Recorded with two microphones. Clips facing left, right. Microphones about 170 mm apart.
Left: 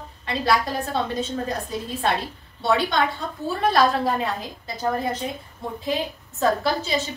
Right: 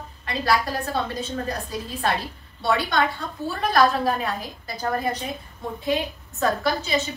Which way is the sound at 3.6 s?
25° left (ahead or behind).